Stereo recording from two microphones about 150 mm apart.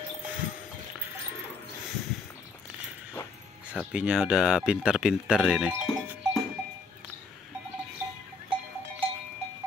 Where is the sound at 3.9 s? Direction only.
5° right (ahead or behind).